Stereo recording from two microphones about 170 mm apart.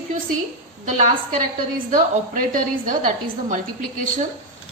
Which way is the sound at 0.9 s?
45° right (ahead or behind).